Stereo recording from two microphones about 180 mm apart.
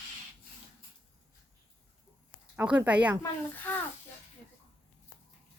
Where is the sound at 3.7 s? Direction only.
10° left (ahead or behind).